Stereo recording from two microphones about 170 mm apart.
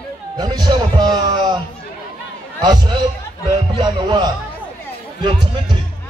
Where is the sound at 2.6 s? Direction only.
25° right (ahead or behind).